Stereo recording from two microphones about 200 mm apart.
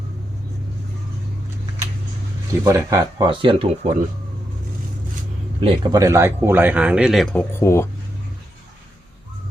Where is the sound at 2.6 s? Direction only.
15° right (ahead or behind); by 4.0 s 30° right (ahead or behind).